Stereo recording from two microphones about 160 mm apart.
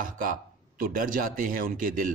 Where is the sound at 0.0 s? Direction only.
60° right (ahead or behind).